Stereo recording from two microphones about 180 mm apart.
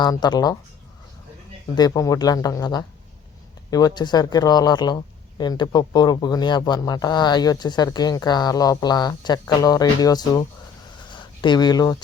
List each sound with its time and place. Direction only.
0.0 s speech: 25° left (ahead or behind)
1.7 s speech: 20° left (ahead or behind)